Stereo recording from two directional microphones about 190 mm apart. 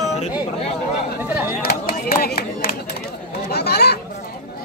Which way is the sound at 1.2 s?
10° right (ahead or behind).